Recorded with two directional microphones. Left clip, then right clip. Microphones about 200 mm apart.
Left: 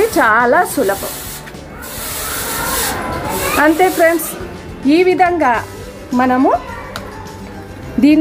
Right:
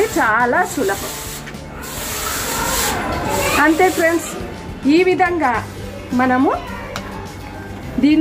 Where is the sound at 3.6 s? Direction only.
45° left (ahead or behind).